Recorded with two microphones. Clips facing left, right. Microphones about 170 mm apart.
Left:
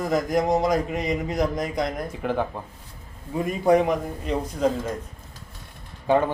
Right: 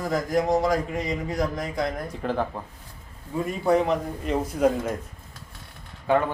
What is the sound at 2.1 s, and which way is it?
Speech, 5° left (ahead or behind).